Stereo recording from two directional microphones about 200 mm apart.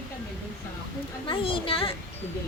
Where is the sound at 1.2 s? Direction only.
25° left (ahead or behind).